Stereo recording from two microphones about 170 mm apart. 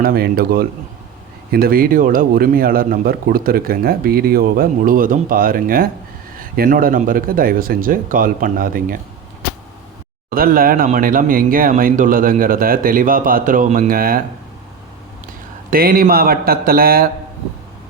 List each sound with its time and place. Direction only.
0.0 s speech: 60° right (ahead or behind)
10.2 s speech: 55° right (ahead or behind)
15.7 s speech: 60° right (ahead or behind)